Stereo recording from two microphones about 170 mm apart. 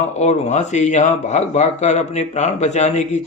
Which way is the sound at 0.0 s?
40° left (ahead or behind).